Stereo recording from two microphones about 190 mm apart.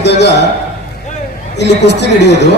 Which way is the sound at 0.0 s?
65° left (ahead or behind).